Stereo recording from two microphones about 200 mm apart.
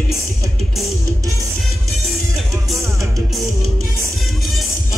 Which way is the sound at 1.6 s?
Centre (ahead or behind).